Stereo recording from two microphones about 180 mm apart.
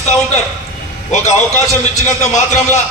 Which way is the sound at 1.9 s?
40° left (ahead or behind).